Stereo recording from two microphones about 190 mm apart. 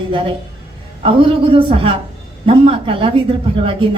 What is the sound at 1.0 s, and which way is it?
A woman's voice, 30° right (ahead or behind).